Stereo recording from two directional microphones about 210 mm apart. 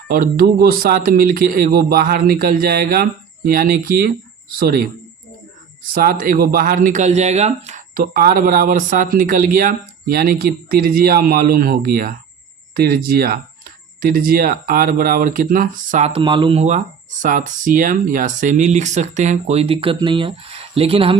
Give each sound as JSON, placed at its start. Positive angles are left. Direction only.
{"t": 0.1, "sound": "speech", "side_deg": -45}
{"t": 5.9, "sound": "speech", "side_deg": -45}